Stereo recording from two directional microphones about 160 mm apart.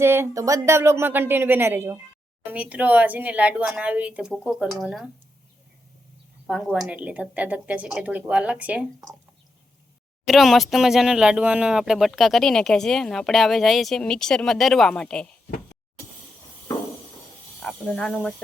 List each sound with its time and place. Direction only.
0.0 s speech: 15° right (ahead or behind)
6.5 s speech: 5° right (ahead or behind)
10.2 s speech: centre (ahead or behind)
17.6 s speech: 5° left (ahead or behind)